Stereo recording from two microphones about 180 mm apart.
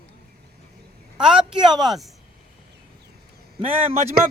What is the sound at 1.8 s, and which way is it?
Speech, centre (ahead or behind).